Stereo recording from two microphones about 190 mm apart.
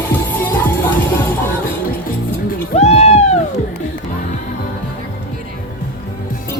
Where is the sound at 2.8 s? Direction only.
35° left (ahead or behind).